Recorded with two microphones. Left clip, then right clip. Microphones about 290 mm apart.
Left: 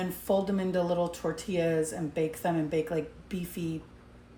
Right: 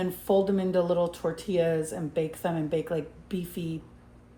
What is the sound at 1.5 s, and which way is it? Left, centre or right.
Speech, centre.